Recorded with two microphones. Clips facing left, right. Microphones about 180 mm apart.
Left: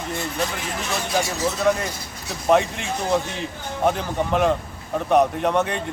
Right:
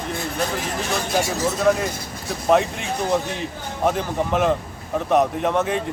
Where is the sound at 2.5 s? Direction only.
Centre (ahead or behind).